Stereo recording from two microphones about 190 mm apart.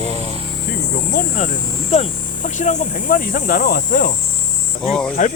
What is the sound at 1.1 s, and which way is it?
Speech, 45° left (ahead or behind).